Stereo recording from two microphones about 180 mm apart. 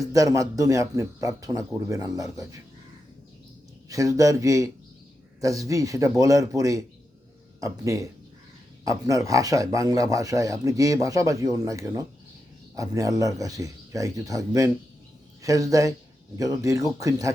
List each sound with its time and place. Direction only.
0.1 s a man's voice: 20° right (ahead or behind)
3.8 s a man's voice: 20° right (ahead or behind)